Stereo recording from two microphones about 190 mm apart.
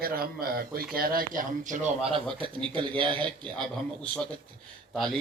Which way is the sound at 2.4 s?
25° right (ahead or behind).